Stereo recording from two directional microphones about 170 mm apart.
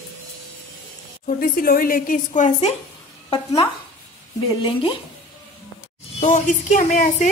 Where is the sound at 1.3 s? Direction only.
55° left (ahead or behind).